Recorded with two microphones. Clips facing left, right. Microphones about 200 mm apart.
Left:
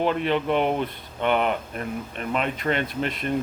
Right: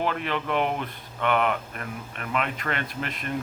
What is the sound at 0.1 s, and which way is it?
Speech, 30° left (ahead or behind).